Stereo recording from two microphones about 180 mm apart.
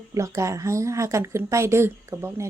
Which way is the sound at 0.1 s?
15° right (ahead or behind).